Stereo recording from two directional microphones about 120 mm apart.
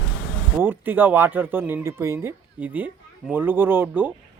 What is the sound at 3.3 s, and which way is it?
Speech, 15° right (ahead or behind).